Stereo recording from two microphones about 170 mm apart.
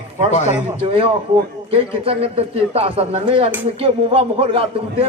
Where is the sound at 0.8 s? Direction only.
30° right (ahead or behind).